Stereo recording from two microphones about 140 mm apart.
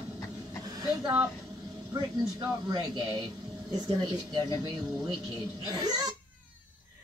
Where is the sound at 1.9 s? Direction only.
30° right (ahead or behind).